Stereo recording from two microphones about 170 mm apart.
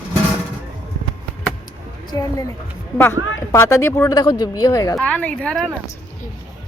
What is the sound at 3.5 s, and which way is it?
Speech, 15° left (ahead or behind).